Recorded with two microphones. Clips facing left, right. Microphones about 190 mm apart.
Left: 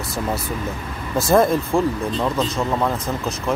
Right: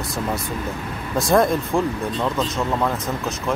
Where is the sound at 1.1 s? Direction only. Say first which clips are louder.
Left 2 dB; centre (ahead or behind).